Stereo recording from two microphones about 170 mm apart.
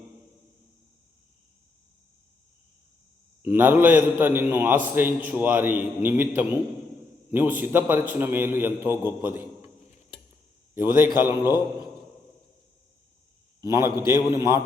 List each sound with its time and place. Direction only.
3.4 s a man's voice: 10° right (ahead or behind)
9.6 s a sound: 40° left (ahead or behind)
10.8 s a man's voice: 10° right (ahead or behind)
13.6 s a man's voice: 15° right (ahead or behind)